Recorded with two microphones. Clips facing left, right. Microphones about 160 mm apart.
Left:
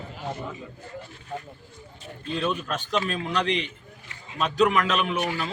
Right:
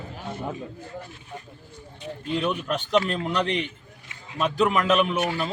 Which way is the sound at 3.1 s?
55° right (ahead or behind).